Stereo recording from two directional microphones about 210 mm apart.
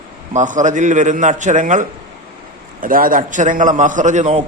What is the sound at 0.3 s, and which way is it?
A man's voice, 35° right (ahead or behind).